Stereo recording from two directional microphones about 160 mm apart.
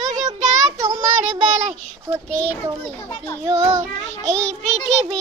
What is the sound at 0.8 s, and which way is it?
Child singing, 25° right (ahead or behind).